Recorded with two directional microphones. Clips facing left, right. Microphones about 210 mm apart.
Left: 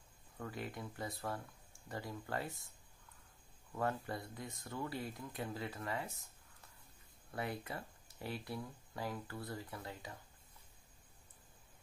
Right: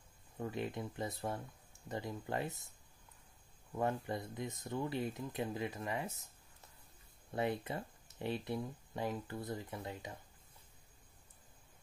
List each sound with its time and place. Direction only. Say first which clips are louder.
0.4 s speech: right 5 dB; 20° right (ahead or behind)
3.7 s speech: right 2 dB; 20° right (ahead or behind)
7.2 s speech: right 5 dB; 20° right (ahead or behind)